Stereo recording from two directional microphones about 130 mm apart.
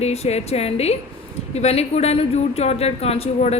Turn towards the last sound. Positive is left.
turn(degrees=50)  # may be behind; listen again after turning